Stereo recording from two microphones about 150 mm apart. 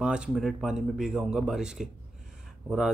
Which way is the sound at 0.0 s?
5° right (ahead or behind).